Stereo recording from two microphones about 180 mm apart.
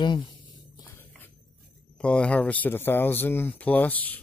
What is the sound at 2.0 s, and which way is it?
Speech, 5° left (ahead or behind).